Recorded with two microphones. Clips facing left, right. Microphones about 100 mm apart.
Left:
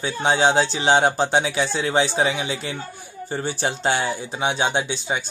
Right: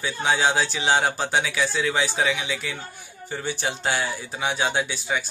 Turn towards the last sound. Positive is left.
turn(degrees=25)  # may be behind; listen again after turning